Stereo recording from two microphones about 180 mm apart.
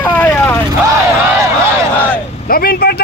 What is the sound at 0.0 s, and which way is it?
Vehicle, 10° left (ahead or behind).